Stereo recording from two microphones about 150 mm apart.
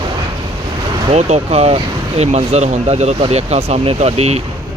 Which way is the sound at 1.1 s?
45° right (ahead or behind).